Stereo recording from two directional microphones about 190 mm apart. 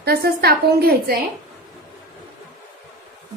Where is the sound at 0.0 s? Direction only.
55° right (ahead or behind).